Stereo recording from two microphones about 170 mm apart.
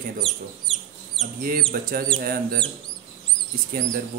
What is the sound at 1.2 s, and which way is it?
Speech, 55° right (ahead or behind).